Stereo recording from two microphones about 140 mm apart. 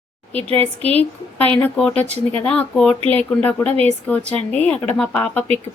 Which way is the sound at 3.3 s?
10° left (ahead or behind).